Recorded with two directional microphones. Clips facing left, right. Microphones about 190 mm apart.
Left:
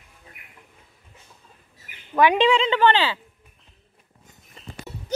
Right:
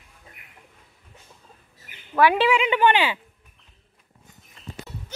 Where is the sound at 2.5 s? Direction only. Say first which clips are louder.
Left 1 dB; 15° right (ahead or behind).